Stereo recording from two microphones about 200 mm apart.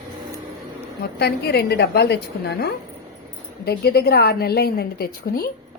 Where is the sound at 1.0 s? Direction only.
55° left (ahead or behind).